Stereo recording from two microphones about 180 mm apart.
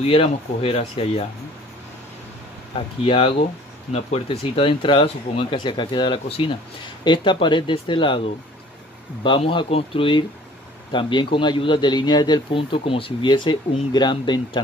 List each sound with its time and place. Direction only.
0.0 s speech: 30° left (ahead or behind)
3.0 s a man's voice: 30° left (ahead or behind)
9.2 s a man's voice: 25° left (ahead or behind)